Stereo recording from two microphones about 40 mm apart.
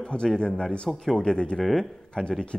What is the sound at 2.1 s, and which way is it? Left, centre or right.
Speech, left.